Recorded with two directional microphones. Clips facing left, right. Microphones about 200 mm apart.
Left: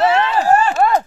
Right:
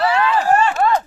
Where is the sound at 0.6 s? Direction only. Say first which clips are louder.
Left 1 dB; 40° left (ahead or behind).